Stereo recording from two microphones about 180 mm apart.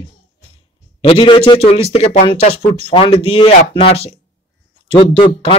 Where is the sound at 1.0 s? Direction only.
30° left (ahead or behind).